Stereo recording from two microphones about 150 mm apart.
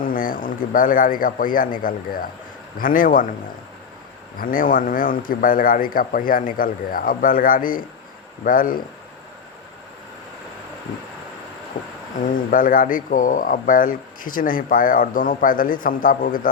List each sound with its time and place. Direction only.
0.0 s a man's voice: 65° left (ahead or behind)
4.4 s speech: 65° left (ahead or behind)
12.3 s speech: 65° left (ahead or behind)